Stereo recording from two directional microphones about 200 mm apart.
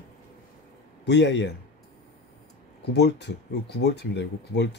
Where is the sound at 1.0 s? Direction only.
60° left (ahead or behind).